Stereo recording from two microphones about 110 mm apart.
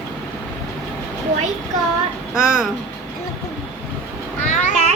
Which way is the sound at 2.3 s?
5° right (ahead or behind).